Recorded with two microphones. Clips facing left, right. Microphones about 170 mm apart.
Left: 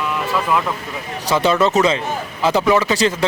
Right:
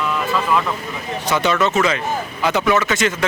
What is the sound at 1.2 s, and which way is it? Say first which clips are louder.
Speech: left 3 dB; 30° left (ahead or behind).